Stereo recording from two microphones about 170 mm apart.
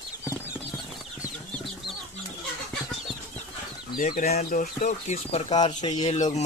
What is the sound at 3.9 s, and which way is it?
Speech, 55° left (ahead or behind).